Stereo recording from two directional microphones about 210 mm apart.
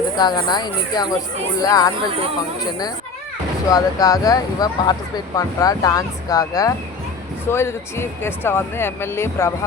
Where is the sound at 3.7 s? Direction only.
15° left (ahead or behind).